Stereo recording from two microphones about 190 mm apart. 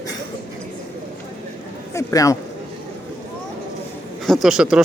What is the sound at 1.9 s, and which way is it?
Speech, 15° left (ahead or behind).